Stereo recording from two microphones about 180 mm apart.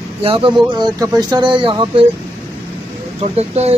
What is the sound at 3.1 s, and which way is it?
Speech, 35° right (ahead or behind).